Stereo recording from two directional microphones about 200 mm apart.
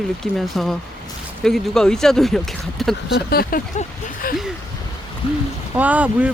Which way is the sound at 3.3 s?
45° left (ahead or behind).